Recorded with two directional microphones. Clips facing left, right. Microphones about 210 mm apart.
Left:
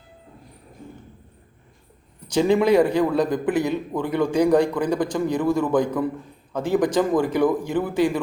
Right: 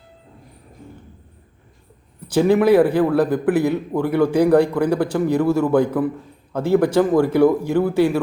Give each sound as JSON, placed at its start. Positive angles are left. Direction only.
{"t": 2.2, "sound": "a man's voice", "side_deg": -5}